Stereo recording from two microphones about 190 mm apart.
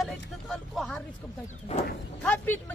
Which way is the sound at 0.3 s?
Centre (ahead or behind).